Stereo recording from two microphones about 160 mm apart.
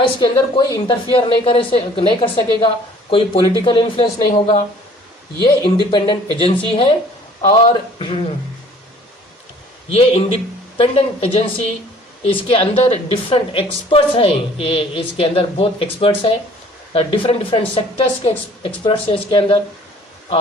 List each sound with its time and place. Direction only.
0.2 s a woman's voice: 30° left (ahead or behind)
5.4 s a woman's voice: 30° left (ahead or behind)
9.9 s a woman's voice: 40° left (ahead or behind)